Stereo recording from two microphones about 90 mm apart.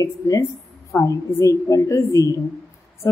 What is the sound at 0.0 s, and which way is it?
A woman's voice, 40° left (ahead or behind).